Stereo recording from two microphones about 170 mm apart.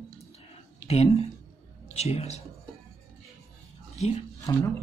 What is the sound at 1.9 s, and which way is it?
Speech, 40° left (ahead or behind).